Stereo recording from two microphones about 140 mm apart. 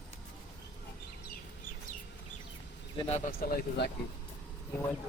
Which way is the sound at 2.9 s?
45° left (ahead or behind).